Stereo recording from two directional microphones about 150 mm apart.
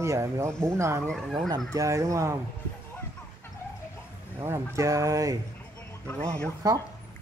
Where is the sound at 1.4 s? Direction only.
25° right (ahead or behind).